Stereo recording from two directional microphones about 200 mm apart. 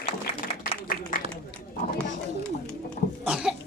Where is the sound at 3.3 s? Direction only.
5° right (ahead or behind).